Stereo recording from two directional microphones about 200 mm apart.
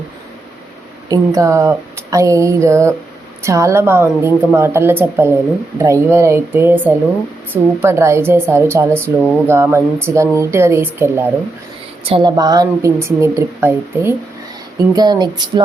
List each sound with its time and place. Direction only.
1.1 s a woman's voice: 15° right (ahead or behind)
12.0 s a woman's voice: 25° right (ahead or behind)